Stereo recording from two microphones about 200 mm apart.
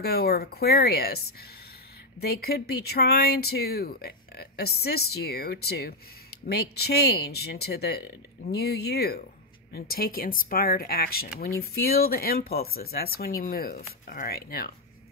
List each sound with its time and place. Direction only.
0.0 s speech: 50° left (ahead or behind)